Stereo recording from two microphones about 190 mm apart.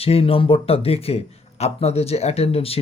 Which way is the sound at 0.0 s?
30° left (ahead or behind).